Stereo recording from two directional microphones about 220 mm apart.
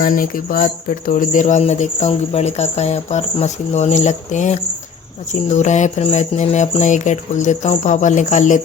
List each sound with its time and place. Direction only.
0.0 s speech: 40° left (ahead or behind)